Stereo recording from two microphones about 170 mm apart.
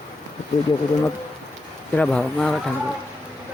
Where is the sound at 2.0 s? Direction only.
5° left (ahead or behind).